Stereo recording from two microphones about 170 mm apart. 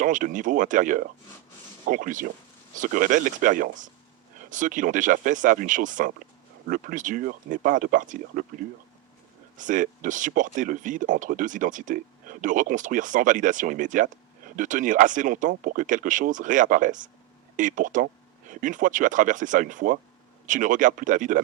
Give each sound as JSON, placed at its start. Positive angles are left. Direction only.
{"t": 0.0, "sound": "speech", "side_deg": -50}
{"t": 9.6, "sound": "speech", "side_deg": -50}